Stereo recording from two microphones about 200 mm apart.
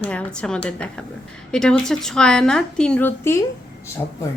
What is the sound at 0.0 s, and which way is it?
A woman's voice, 5° left (ahead or behind).